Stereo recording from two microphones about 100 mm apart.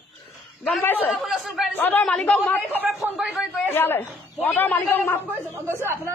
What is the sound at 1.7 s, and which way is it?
A man's voice, 20° left (ahead or behind).